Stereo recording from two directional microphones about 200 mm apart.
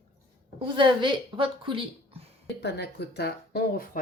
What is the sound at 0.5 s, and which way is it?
A woman's voice, 25° right (ahead or behind).